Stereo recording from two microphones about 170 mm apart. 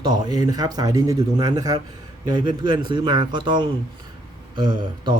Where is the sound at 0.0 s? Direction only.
25° right (ahead or behind).